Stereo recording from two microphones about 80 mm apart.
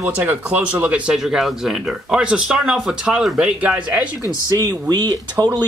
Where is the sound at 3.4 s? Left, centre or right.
Centre.